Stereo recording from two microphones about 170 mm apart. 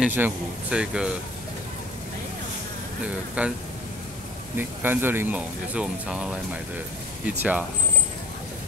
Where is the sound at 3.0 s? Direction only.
10° right (ahead or behind).